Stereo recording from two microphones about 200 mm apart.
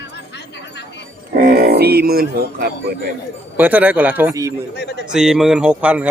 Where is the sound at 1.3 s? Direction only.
45° right (ahead or behind).